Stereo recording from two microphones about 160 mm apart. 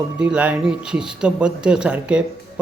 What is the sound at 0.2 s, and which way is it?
A man's voice, 5° right (ahead or behind).